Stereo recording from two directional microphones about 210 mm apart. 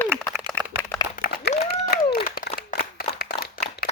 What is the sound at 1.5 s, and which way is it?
Applause, 35° left (ahead or behind).